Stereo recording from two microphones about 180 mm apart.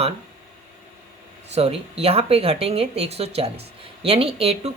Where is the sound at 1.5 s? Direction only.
35° right (ahead or behind).